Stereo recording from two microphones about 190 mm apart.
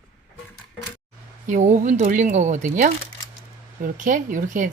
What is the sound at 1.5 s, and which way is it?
Speech, 40° right (ahead or behind).